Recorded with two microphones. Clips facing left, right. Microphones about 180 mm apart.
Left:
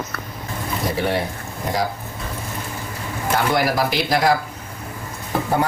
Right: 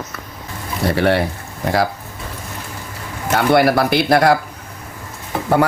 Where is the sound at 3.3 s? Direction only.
65° right (ahead or behind).